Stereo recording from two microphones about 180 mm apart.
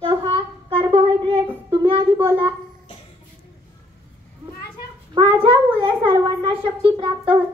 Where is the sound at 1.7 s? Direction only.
30° right (ahead or behind).